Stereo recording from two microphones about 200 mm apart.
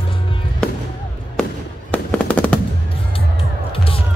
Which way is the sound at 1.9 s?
5° left (ahead or behind).